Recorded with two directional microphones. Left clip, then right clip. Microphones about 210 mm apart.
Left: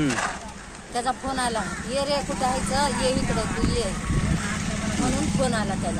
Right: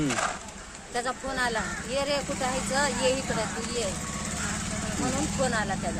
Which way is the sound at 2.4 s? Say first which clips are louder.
Left 4 dB; 30° right (ahead or behind).